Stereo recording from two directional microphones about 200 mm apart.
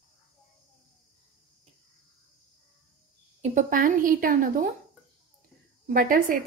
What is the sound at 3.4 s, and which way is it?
A woman's voice, 40° right (ahead or behind).